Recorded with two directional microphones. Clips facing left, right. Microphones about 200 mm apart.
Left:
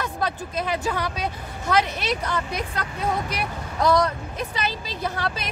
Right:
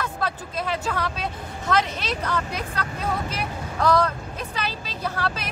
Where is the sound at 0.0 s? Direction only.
15° left (ahead or behind).